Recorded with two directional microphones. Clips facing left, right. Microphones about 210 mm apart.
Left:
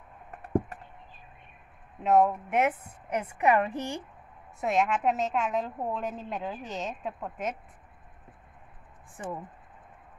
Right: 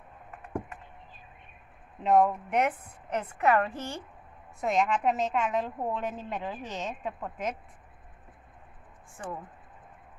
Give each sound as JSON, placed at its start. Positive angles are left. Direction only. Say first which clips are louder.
{"t": 0.3, "sound": "a sound", "louder": "left 8 dB", "side_deg": 40}
{"t": 2.0, "sound": "a woman's voice", "louder": "even", "side_deg": 5}
{"t": 4.6, "sound": "a woman's voice", "louder": "even", "side_deg": 5}
{"t": 9.1, "sound": "a woman's voice", "louder": "left 2 dB", "side_deg": 20}